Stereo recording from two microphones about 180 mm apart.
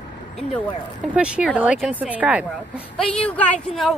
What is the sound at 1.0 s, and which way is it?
Speech, 5° right (ahead or behind).